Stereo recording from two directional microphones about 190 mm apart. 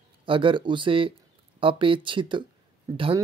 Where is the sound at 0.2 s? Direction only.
25° right (ahead or behind).